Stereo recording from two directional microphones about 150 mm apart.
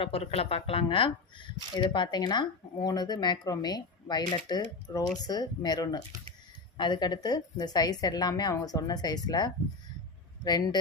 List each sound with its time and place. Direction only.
0.0 s speech: 40° left (ahead or behind)